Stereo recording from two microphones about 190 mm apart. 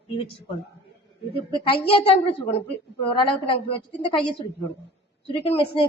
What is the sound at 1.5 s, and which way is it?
A woman's voice, 30° left (ahead or behind).